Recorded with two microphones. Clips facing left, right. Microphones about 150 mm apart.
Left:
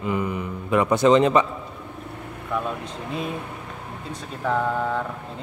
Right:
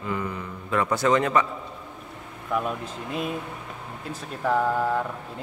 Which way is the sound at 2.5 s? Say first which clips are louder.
Even; centre (ahead or behind).